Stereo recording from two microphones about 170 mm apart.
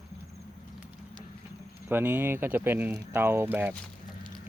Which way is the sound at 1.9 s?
10° right (ahead or behind).